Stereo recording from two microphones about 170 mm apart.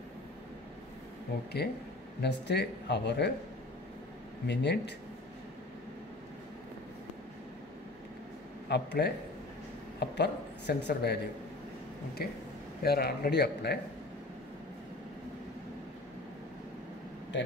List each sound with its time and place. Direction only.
1.6 s speech: 70° left (ahead or behind); by 3.3 s 85° left
4.5 s speech: 90° left
8.6 s speech: 80° left
12.2 s speech: 70° left (ahead or behind)